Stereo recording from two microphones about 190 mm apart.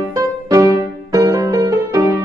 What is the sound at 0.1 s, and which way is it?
Music, 15° right (ahead or behind).